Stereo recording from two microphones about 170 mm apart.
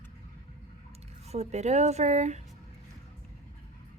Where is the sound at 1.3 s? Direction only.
40° right (ahead or behind).